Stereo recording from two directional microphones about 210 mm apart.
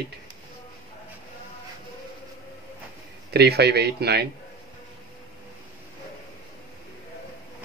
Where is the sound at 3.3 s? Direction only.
50° right (ahead or behind).